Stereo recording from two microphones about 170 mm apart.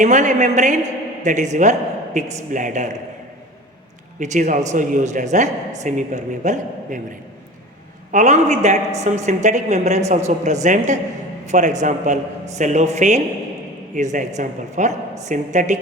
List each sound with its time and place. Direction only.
0.0 s speech: 45° right (ahead or behind)
4.2 s speech: 45° right (ahead or behind)
8.1 s speech: 45° right (ahead or behind)